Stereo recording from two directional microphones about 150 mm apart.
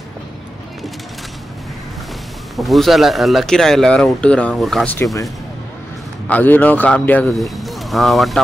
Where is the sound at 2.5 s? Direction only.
Centre (ahead or behind).